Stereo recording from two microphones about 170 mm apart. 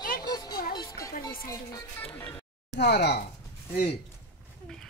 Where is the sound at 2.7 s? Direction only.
75° left (ahead or behind).